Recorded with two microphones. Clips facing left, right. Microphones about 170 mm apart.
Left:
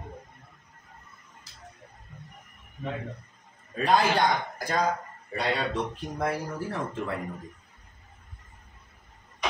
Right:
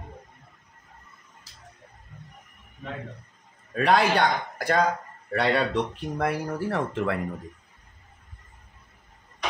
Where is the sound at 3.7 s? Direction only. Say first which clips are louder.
Right 2 dB; 70° right (ahead or behind).